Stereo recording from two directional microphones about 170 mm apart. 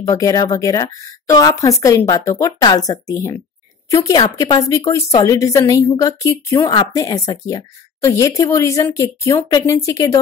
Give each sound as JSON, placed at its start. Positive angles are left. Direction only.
{"t": 0.0, "sound": "a woman's voice", "side_deg": 20}